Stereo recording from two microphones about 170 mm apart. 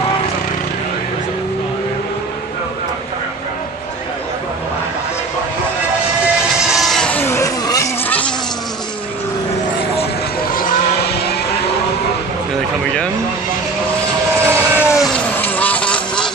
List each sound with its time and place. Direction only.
6.7 s a sound: centre (ahead or behind)
10.5 s vehicle: 60° left (ahead or behind)
14.4 s vehicle: 15° right (ahead or behind)
15.0 s vehicle: 5° left (ahead or behind)